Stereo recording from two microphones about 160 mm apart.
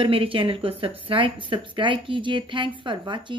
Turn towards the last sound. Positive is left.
turn(degrees=-30)  # may be behind; listen again after turning